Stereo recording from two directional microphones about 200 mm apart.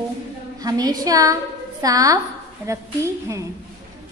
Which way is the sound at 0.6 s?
20° right (ahead or behind).